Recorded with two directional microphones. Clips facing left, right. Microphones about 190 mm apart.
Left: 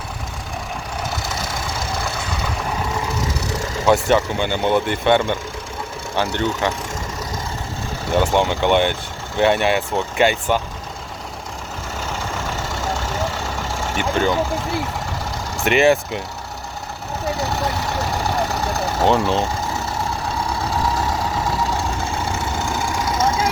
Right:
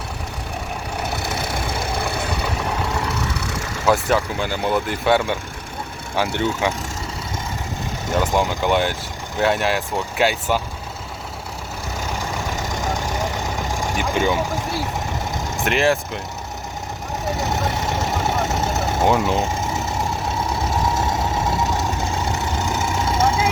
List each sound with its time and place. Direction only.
1.0 s vehicle: 60° right (ahead or behind)
3.8 s speech: centre (ahead or behind)
8.2 s speech: centre (ahead or behind)
12.5 s vehicle: 15° right (ahead or behind)
15.6 s speech: centre (ahead or behind)
17.3 s vehicle: 20° right (ahead or behind)
19.0 s vehicle: 10° right (ahead or behind); by 23.4 s 25° right (ahead or behind)